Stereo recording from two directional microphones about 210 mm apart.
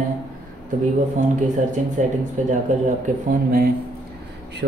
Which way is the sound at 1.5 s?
35° right (ahead or behind).